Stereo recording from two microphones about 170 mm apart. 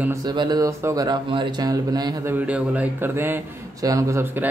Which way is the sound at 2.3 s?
10° right (ahead or behind).